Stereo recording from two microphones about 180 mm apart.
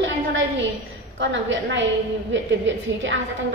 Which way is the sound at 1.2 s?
85° right.